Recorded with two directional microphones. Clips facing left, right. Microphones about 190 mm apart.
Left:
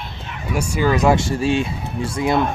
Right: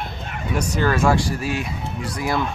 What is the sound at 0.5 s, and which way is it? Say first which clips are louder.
Speech: left 2 dB; 10° left (ahead or behind).